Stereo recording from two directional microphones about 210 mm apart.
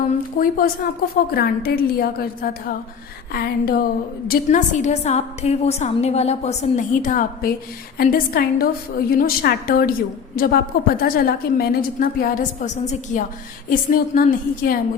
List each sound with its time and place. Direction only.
0.0 s a woman's voice: 40° left (ahead or behind)